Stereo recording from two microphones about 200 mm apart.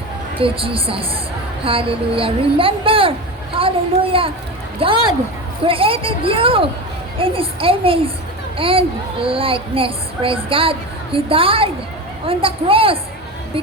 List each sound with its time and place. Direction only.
0.3 s a child's voice: 25° right (ahead or behind)
3.6 s a sound: 25° right (ahead or behind)
4.1 s a child's voice: 25° right (ahead or behind)